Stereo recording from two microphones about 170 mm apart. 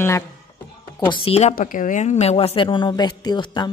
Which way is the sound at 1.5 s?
50° left (ahead or behind).